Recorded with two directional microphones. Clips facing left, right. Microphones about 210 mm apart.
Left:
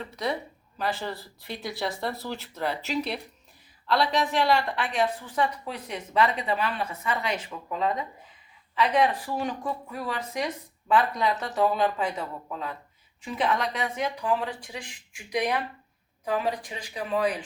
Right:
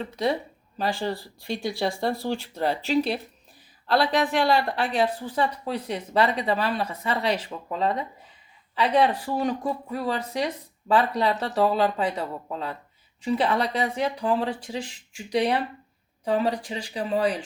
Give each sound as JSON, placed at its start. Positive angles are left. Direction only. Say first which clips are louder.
{"t": 0.8, "sound": "a woman's voice", "louder": "right 4 dB", "side_deg": -30}